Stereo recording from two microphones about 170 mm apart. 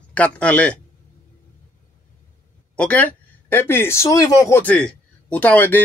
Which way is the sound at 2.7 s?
10° left (ahead or behind).